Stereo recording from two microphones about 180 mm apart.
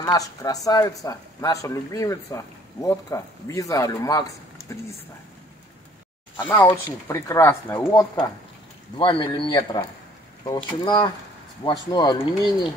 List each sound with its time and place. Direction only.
0.0 s speech: 20° left (ahead or behind)
6.3 s speech: 10° left (ahead or behind)
8.9 s speech: 30° left (ahead or behind)